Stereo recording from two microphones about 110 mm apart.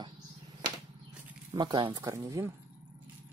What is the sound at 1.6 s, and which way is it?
Speech, 45° right (ahead or behind).